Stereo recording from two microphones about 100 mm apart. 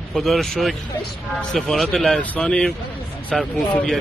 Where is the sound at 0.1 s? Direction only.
5° left (ahead or behind).